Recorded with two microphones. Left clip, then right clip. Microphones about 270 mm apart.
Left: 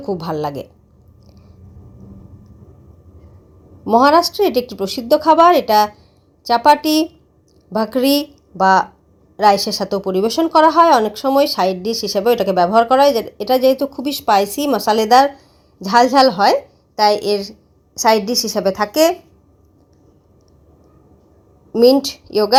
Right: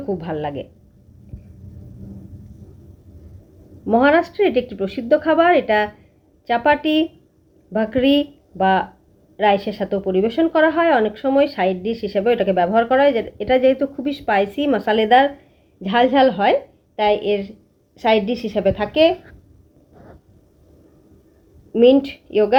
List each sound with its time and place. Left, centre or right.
0.0 s speech: left
3.8 s a woman's voice: left
18.9 s a woman's voice: left
21.7 s a woman's voice: left